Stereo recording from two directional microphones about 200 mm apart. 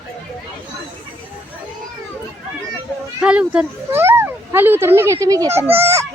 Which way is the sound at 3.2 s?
5° right (ahead or behind).